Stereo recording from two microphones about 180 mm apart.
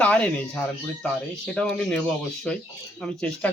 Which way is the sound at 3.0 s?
5° left (ahead or behind).